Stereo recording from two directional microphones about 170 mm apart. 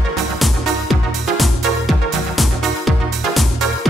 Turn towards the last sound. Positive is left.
turn(degrees=0)  # may be behind; listen again after turning